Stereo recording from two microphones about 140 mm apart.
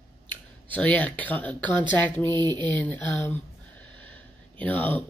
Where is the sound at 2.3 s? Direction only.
30° right (ahead or behind).